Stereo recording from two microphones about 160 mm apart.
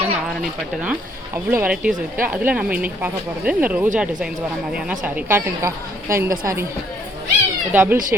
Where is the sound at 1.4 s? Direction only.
10° right (ahead or behind).